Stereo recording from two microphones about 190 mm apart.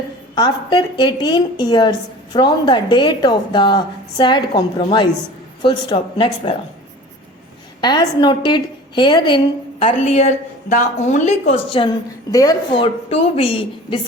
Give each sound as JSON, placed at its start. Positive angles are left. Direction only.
{"t": 0.3, "sound": "a woman's voice", "side_deg": 20}
{"t": 7.8, "sound": "a woman's voice", "side_deg": 20}
{"t": 9.8, "sound": "a woman's voice", "side_deg": 35}
{"t": 12.3, "sound": "a woman's voice", "side_deg": 20}